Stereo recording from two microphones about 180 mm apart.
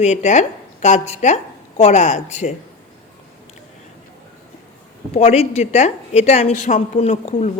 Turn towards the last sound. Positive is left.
turn(degrees=40)  # may be behind; listen again after turning